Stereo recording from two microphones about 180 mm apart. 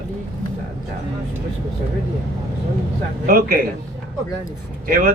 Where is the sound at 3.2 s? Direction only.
55° right (ahead or behind).